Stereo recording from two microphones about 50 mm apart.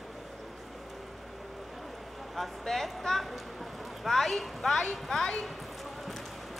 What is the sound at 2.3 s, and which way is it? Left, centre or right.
Speech, centre.